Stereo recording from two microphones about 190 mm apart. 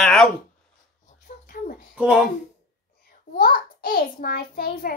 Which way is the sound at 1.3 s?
35° left (ahead or behind).